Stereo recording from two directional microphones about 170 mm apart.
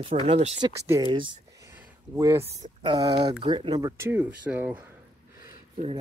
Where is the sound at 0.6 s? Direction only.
20° right (ahead or behind).